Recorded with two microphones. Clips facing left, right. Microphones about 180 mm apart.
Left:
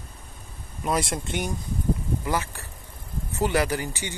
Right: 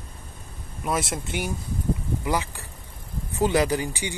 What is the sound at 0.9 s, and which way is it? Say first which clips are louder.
A man's voice: left 1 dB; 5° right (ahead or behind).